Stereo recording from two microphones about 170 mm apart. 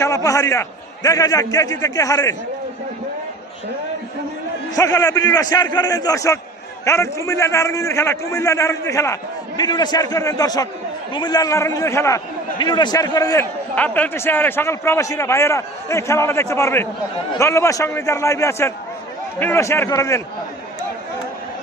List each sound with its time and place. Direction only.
0.0 s a man's voice: 20° left (ahead or behind)
4.7 s a man's voice: 20° left (ahead or behind)
13.7 s a man's voice: 10° left (ahead or behind)